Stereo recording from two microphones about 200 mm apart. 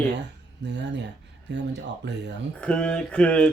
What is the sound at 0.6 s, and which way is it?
Speech, 60° right (ahead or behind).